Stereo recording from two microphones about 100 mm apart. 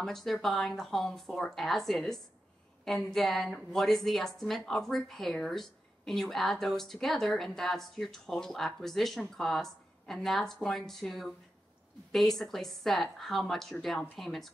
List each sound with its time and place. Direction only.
0.0 s a woman's voice: 5° left (ahead or behind)